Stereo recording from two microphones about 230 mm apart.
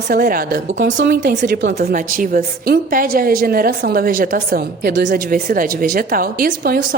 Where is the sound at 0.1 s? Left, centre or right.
Right.